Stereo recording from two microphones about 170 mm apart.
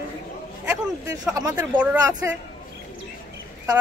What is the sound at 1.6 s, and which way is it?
Speech, 10° right (ahead or behind).